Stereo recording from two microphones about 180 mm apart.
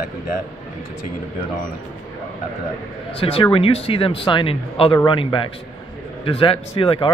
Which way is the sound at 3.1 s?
30° left (ahead or behind).